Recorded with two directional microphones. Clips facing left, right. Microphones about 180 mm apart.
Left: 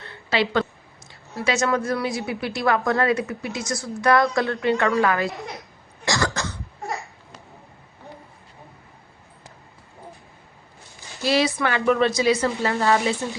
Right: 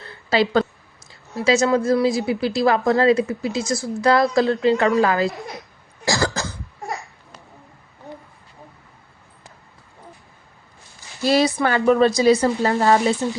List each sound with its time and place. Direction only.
0.0 s a sound: 35° right (ahead or behind)
1.5 s a woman's voice: 30° right (ahead or behind)
6.1 s cough: 30° right (ahead or behind)
11.2 s a woman's voice: 45° right (ahead or behind)